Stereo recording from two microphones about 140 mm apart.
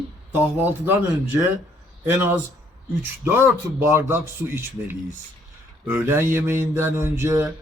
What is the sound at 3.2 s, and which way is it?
Speech, 15° right (ahead or behind).